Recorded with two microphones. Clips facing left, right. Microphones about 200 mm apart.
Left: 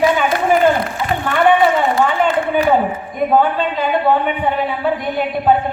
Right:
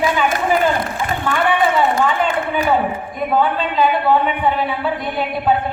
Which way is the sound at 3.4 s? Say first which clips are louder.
Even; 50° left (ahead or behind).